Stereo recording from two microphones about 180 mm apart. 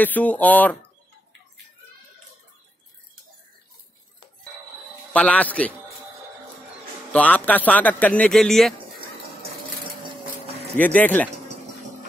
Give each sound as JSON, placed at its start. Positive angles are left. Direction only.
{"t": 0.0, "sound": "speech", "side_deg": 10}
{"t": 5.1, "sound": "speech", "side_deg": 10}
{"t": 7.1, "sound": "speech", "side_deg": 10}
{"t": 10.8, "sound": "speech", "side_deg": 10}